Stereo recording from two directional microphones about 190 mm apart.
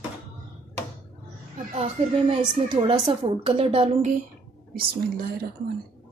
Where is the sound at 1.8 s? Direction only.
30° right (ahead or behind).